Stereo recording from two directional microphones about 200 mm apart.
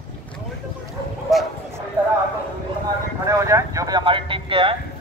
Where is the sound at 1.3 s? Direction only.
Centre (ahead or behind).